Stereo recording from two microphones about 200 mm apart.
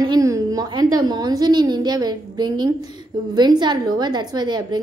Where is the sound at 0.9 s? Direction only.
20° right (ahead or behind).